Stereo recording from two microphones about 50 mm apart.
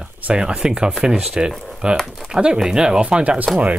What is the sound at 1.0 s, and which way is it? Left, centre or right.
Speech, centre.